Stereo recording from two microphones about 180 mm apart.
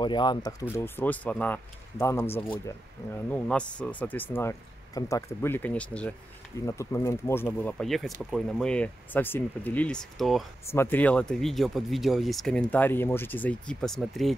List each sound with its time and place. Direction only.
0.0 s speech: 25° left (ahead or behind)
2.4 s speech: 25° left (ahead or behind)
3.1 s speech: 10° left (ahead or behind)
7.8 s speech: centre (ahead or behind)
10.7 s speech: 10° left (ahead or behind)